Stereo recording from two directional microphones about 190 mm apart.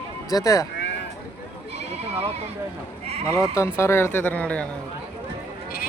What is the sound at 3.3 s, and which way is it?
Speech, 15° left (ahead or behind).